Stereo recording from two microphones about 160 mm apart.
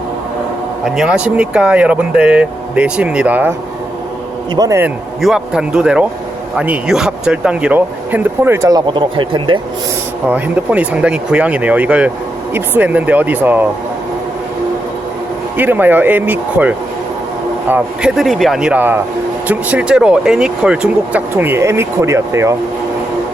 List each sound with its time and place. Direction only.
0.9 s speech: 5° right (ahead or behind)
4.5 s a man's voice: 25° right (ahead or behind)
5.2 s speech: 5° right (ahead or behind); by 9.6 s 30° right (ahead or behind)
10.2 s speech: 10° right (ahead or behind)
15.5 s speech: 10° right (ahead or behind)